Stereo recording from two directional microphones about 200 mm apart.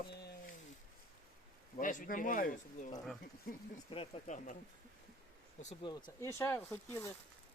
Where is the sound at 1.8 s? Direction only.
40° left (ahead or behind).